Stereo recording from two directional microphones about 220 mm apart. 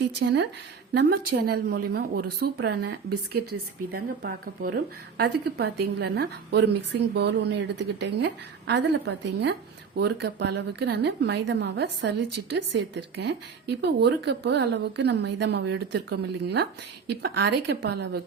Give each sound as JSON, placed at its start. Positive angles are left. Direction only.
{"t": 0.2, "sound": "speech", "side_deg": -50}